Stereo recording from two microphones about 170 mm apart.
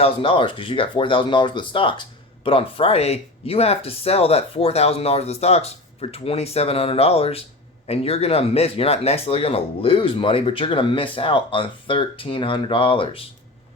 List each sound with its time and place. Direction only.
0.0 s speech: 30° left (ahead or behind)